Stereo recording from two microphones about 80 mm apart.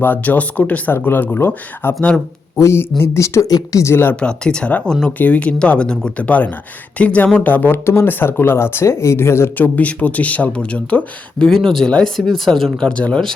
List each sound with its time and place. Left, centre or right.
0.0 s speech: left
2.6 s speech: left
3.9 s speech: left
4.2 s speech: centre; by 9.6 s left
9.7 s speech: centre